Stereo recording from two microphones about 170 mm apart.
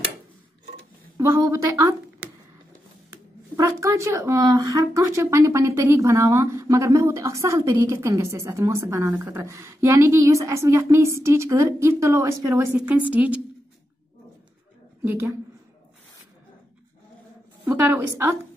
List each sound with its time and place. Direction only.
1.1 s a woman's voice: 15° right (ahead or behind)
3.5 s a woman's voice: 20° right (ahead or behind)
15.0 s a woman's voice: 15° right (ahead or behind)
17.6 s a woman's voice: 10° right (ahead or behind)